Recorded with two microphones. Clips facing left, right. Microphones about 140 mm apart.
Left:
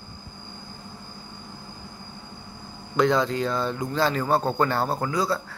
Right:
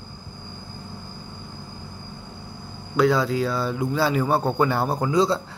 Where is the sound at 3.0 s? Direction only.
5° right (ahead or behind).